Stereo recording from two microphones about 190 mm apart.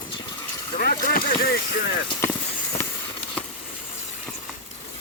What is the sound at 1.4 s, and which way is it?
Speech, 60° left (ahead or behind).